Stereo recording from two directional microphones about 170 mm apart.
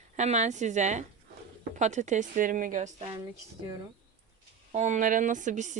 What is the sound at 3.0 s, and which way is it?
Speech, 30° right (ahead or behind).